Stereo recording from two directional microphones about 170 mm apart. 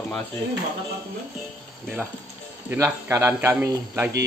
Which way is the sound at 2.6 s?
15° right (ahead or behind).